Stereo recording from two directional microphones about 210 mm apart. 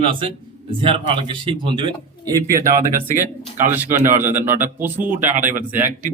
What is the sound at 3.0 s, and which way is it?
A man's voice, 10° right (ahead or behind).